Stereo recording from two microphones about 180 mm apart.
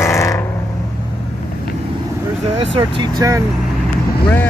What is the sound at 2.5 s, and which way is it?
Vehicle, 30° right (ahead or behind).